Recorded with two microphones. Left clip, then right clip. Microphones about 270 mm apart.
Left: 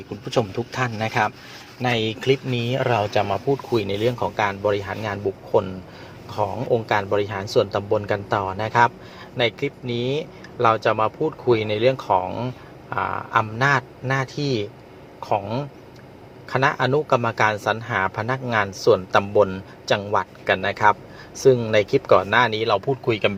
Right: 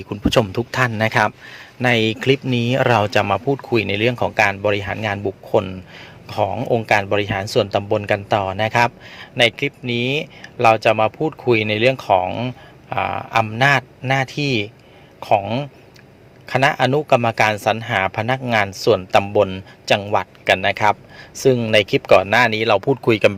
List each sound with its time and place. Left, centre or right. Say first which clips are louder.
0.1 s speech: right 6 dB; right
6.2 s speech: right 4 dB; right
19.5 s speech: right 4 dB; right
20.1 s speech: right 4 dB; right